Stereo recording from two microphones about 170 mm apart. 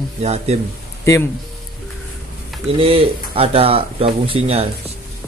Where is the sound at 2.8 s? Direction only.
35° right (ahead or behind).